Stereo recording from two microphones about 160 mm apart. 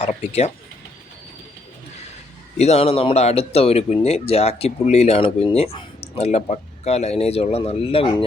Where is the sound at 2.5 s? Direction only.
45° left (ahead or behind).